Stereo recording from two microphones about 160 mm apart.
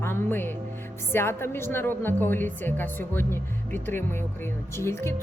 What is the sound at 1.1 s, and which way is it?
A woman's voice, 15° left (ahead or behind).